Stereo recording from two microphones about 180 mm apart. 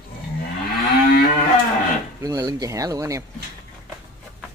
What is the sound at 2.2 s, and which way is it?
Speech, 20° right (ahead or behind).